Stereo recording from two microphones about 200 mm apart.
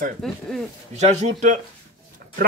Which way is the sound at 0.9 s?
35° right (ahead or behind).